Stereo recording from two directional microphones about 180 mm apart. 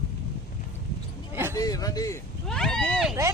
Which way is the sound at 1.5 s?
20° left (ahead or behind).